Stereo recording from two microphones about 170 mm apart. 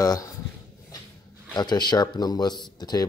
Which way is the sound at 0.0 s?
20° left (ahead or behind).